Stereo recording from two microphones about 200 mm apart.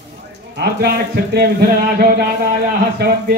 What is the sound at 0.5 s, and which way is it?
Speech, 55° right (ahead or behind).